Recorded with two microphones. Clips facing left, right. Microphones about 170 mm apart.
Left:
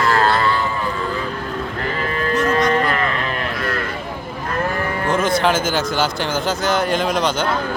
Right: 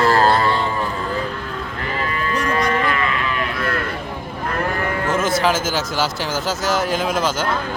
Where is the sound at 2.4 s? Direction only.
35° left (ahead or behind).